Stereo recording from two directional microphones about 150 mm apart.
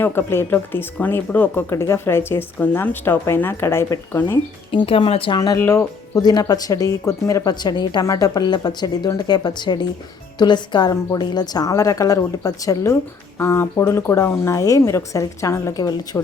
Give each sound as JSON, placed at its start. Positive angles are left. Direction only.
{"t": 0.0, "sound": "speech", "side_deg": 15}
{"t": 4.7, "sound": "speech", "side_deg": 35}
{"t": 5.5, "sound": "speech", "side_deg": 15}